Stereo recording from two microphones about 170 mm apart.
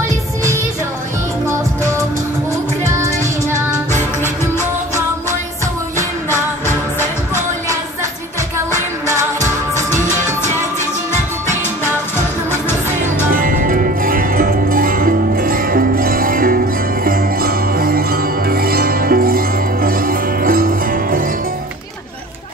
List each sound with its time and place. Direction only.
3.9 s music: 15° left (ahead or behind)
9.0 s music: 15° right (ahead or behind)
13.3 s music: 55° right (ahead or behind)